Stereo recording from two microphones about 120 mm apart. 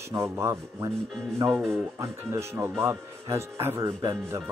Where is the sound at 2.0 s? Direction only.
25° right (ahead or behind).